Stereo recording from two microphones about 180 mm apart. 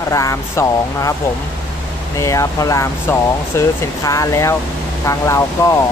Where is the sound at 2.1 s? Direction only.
15° left (ahead or behind).